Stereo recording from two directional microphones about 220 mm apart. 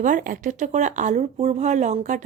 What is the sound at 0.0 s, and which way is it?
Speech, 35° right (ahead or behind).